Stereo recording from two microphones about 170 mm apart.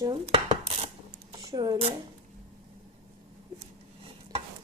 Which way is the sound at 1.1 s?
25° right (ahead or behind).